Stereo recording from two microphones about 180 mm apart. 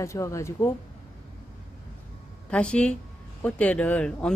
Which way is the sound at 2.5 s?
5° left (ahead or behind).